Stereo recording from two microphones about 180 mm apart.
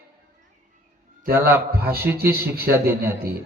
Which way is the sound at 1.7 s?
60° right (ahead or behind).